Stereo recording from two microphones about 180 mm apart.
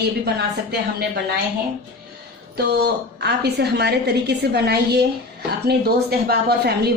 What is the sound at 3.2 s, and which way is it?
Speech, 65° right (ahead or behind).